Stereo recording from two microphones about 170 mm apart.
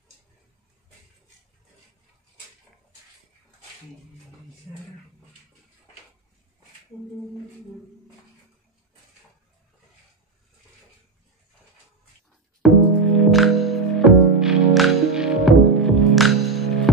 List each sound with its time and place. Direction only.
12.6 s music: centre (ahead or behind)